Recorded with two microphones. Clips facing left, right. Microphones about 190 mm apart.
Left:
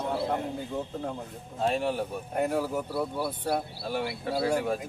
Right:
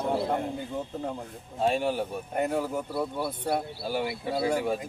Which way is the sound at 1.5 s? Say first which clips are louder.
Right 1 dB; centre (ahead or behind).